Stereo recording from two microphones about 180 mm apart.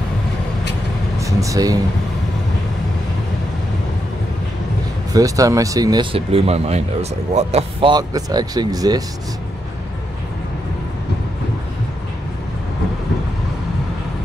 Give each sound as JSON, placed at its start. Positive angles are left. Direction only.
{"t": 1.1, "sound": "air conditioning", "side_deg": -15}
{"t": 5.1, "sound": "speech", "side_deg": -20}
{"t": 7.9, "sound": "speech", "side_deg": -20}